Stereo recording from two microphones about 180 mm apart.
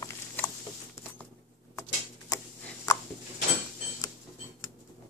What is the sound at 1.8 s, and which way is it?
Tick-tock, 15° left (ahead or behind).